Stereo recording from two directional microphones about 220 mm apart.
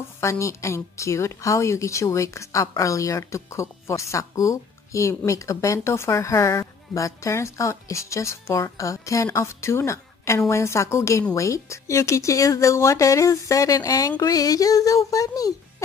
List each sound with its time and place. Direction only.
0.2 s speech: 15° left (ahead or behind)